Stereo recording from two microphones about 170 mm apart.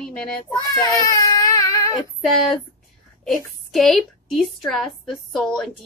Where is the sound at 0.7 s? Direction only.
25° left (ahead or behind).